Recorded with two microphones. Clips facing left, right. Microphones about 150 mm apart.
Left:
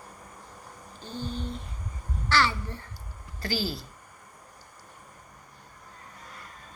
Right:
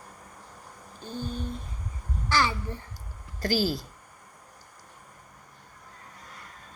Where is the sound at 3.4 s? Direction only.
45° right (ahead or behind).